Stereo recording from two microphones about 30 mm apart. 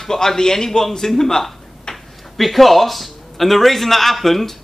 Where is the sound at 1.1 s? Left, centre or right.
Centre.